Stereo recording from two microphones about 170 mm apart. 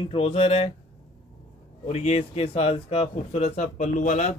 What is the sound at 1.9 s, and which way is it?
Speech, 40° left (ahead or behind).